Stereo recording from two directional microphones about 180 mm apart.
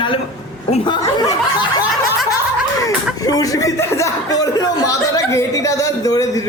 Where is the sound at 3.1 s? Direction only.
20° left (ahead or behind).